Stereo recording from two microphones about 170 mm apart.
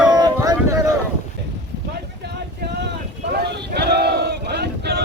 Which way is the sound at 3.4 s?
75° right (ahead or behind).